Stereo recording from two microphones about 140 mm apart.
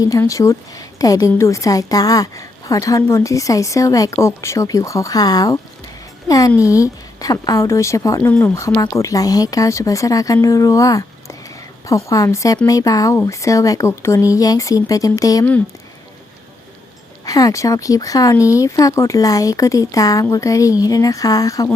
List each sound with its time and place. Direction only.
0.0 s a woman's voice: 25° left (ahead or behind)
8.3 s speech: 10° left (ahead or behind)
8.5 s a woman's voice: 20° left (ahead or behind)
17.2 s a woman's voice: 25° left (ahead or behind)